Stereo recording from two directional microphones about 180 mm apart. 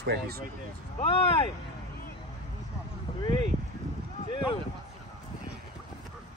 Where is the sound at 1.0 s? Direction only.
30° left (ahead or behind).